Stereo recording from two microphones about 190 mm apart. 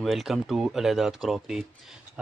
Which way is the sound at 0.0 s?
Centre (ahead or behind).